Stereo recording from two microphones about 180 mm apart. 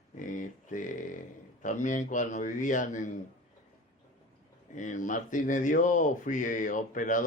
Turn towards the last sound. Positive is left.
turn(degrees=45)  # may be behind; listen again after turning